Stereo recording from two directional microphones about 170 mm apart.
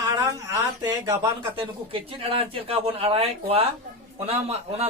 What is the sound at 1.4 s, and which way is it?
Speech, 30° right (ahead or behind).